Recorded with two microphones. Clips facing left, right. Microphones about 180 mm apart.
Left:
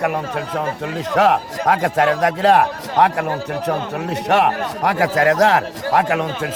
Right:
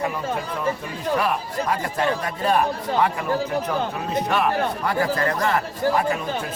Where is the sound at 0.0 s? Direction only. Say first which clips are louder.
Left 4 dB; 75° left (ahead or behind).